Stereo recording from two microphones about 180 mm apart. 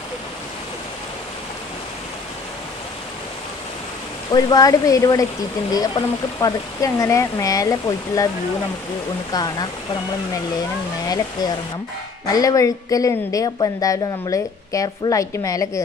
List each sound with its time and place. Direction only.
4.3 s a woman's voice: 20° left (ahead or behind)
9.3 s a woman's voice: 20° left (ahead or behind)
12.3 s a woman's voice: 20° left (ahead or behind)